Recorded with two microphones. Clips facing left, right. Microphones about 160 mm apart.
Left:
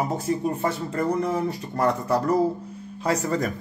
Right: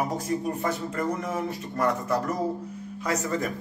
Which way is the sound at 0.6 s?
30° left (ahead or behind).